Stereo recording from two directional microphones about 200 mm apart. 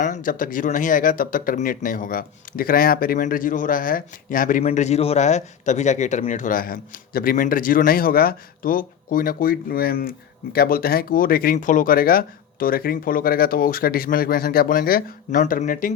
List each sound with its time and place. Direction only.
0.0 s speech: 40° left (ahead or behind)